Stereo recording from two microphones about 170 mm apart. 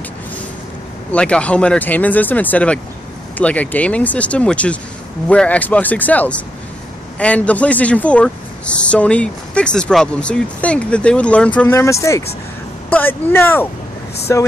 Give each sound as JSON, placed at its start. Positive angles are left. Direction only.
{"t": 1.1, "sound": "speech", "side_deg": 5}